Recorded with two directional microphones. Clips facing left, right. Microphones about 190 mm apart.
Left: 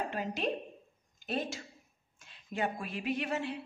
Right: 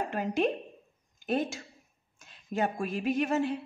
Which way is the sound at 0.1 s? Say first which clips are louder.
Right 6 dB; 50° right (ahead or behind).